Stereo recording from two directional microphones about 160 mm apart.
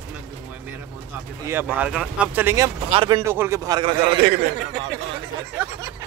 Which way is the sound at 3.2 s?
15° right (ahead or behind).